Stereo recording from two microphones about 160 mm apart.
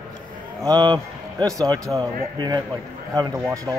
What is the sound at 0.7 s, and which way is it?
A man's voice, 25° right (ahead or behind).